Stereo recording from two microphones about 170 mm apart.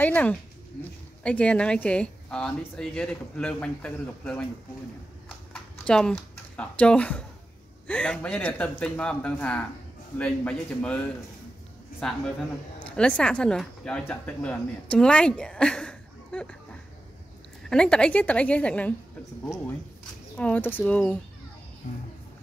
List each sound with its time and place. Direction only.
0.0 s speech: 10° left (ahead or behind)
5.5 s a sound: 5° left (ahead or behind)
7.8 s speech: 5° left (ahead or behind)
17.6 s speech: 5° left (ahead or behind)
20.3 s speech: 10° left (ahead or behind)